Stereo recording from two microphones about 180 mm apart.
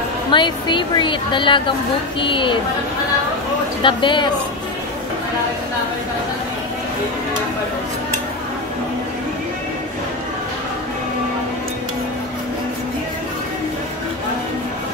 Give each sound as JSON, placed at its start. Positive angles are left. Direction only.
{"t": 0.3, "sound": "a woman's voice", "side_deg": 25}
{"t": 3.8, "sound": "a woman's voice", "side_deg": 25}